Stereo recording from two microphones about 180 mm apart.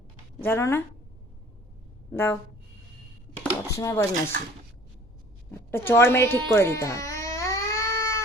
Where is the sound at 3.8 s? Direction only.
15° left (ahead or behind).